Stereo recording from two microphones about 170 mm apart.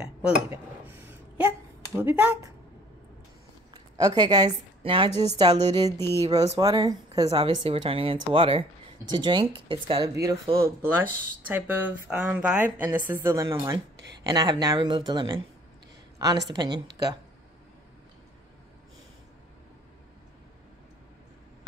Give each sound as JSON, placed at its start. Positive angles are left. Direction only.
{"t": 0.0, "sound": "a sound", "side_deg": -10}
{"t": 2.0, "sound": "speech", "side_deg": -10}
{"t": 3.7, "sound": "speech", "side_deg": -25}
{"t": 5.9, "sound": "speech", "side_deg": 15}
{"t": 6.2, "sound": "speech", "side_deg": -20}
{"t": 7.2, "sound": "speech", "side_deg": -30}
{"t": 10.5, "sound": "speech", "side_deg": -15}